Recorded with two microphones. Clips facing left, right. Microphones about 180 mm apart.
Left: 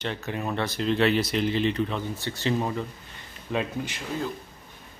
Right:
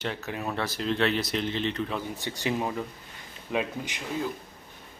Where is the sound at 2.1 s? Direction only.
15° right (ahead or behind).